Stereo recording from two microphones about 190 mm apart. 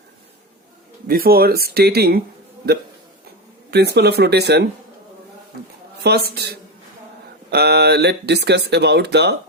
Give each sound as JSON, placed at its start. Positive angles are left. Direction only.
{"t": 1.0, "sound": "speech", "side_deg": -50}
{"t": 3.7, "sound": "speech", "side_deg": -60}
{"t": 6.0, "sound": "speech", "side_deg": -60}